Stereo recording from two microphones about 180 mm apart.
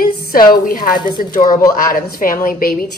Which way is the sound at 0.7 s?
50° left (ahead or behind).